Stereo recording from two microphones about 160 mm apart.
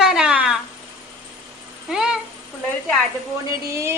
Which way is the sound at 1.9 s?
Centre (ahead or behind).